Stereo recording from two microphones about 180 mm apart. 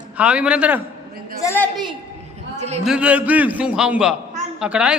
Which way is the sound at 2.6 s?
35° right (ahead or behind).